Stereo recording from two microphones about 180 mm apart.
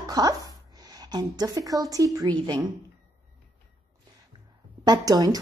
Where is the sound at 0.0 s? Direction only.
20° right (ahead or behind).